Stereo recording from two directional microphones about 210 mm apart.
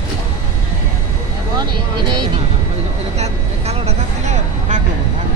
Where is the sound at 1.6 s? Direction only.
20° right (ahead or behind).